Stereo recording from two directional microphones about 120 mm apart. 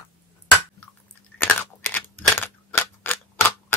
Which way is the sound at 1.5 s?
15° left (ahead or behind).